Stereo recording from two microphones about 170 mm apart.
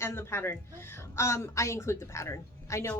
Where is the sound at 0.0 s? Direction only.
15° left (ahead or behind).